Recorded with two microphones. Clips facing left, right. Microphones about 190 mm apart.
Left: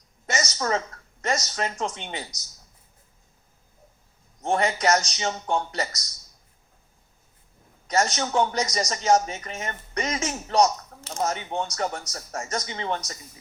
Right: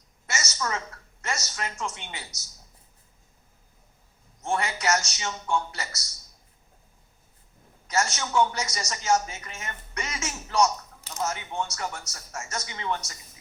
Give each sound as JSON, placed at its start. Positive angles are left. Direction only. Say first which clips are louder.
{"t": 0.3, "sound": "a woman's voice", "louder": "left 5 dB", "side_deg": 35}
{"t": 4.4, "sound": "speech", "louder": "left 5 dB", "side_deg": 35}
{"t": 7.9, "sound": "speech", "louder": "left 4 dB", "side_deg": 35}